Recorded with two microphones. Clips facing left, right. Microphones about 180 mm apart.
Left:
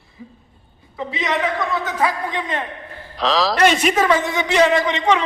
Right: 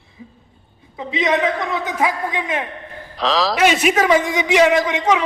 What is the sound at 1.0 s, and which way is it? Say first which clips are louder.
A man's voice: right 3 dB; 20° right (ahead or behind).